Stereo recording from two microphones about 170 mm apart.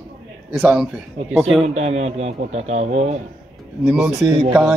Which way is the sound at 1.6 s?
40° right (ahead or behind).